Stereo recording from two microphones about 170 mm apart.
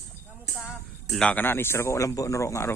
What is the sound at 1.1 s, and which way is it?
Speech, 5° left (ahead or behind).